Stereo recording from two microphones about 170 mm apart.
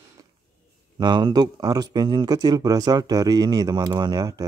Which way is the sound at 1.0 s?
25° right (ahead or behind).